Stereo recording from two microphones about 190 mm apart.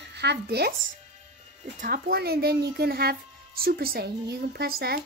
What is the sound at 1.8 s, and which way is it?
A woman's voice, 55° right (ahead or behind).